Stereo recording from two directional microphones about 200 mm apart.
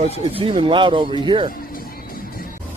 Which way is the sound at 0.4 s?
25° right (ahead or behind).